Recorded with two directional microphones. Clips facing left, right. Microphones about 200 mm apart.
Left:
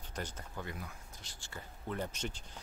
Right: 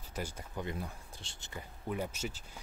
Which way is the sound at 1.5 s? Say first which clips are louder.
Right 2 dB; 10° right (ahead or behind).